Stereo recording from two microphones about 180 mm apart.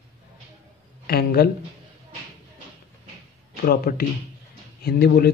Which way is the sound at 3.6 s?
55° left (ahead or behind).